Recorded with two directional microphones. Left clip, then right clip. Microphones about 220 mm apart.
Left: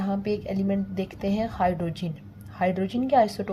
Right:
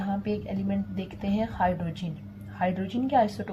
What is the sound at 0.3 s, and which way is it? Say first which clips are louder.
A woman's voice: left 4 dB; 55° left (ahead or behind).